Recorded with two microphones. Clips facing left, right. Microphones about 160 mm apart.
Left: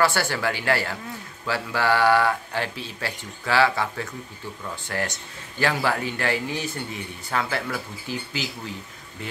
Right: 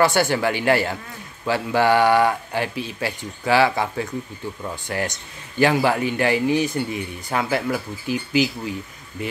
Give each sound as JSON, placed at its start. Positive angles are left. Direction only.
{"t": 0.0, "sound": "speech", "side_deg": -20}